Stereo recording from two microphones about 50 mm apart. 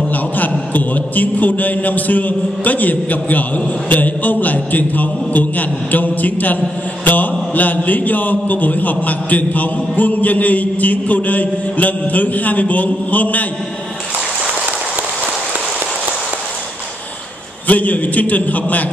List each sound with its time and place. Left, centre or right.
0.7 s a man's voice: left
17.6 s a man's voice: left